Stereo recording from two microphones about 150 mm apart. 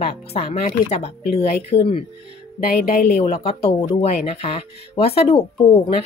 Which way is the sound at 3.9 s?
40° left (ahead or behind).